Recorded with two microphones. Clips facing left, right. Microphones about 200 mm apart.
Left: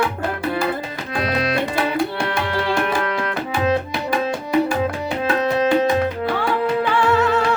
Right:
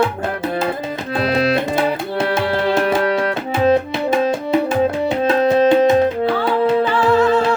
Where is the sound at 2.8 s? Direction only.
35° right (ahead or behind).